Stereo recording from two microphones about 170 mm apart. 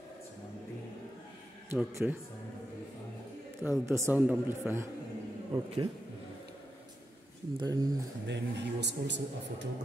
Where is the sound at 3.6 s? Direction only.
15° right (ahead or behind).